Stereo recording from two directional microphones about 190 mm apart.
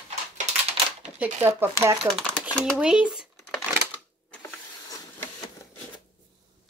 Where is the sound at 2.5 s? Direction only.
5° right (ahead or behind).